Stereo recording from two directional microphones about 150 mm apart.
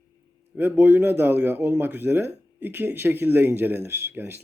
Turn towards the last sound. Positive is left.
turn(degrees=-15)  # may be behind; listen again after turning